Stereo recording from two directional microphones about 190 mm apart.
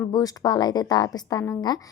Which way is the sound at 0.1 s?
20° left (ahead or behind).